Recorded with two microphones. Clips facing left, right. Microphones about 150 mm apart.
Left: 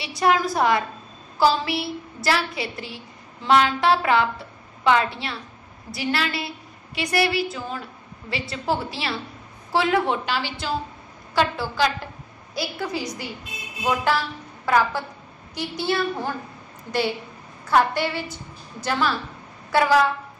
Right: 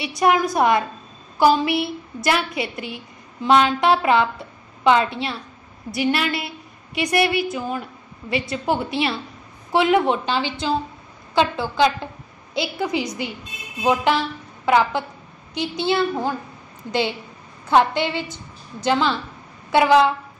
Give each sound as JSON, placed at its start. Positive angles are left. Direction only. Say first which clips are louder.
{"t": 0.0, "sound": "a woman's voice", "louder": "right 2 dB", "side_deg": -20}
{"t": 17.6, "sound": "a woman's voice", "louder": "right 3 dB", "side_deg": -20}